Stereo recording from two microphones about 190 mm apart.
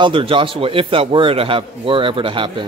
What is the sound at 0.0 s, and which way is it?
A man's voice, 30° right (ahead or behind).